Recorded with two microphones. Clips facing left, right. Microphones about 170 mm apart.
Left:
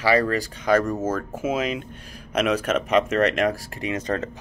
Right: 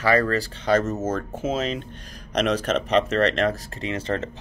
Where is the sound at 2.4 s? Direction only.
35° right (ahead or behind).